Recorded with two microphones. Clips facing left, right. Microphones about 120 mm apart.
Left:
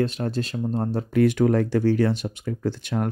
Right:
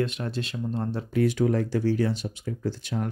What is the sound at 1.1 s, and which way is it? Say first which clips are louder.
Speech: left 4 dB; 60° left (ahead or behind).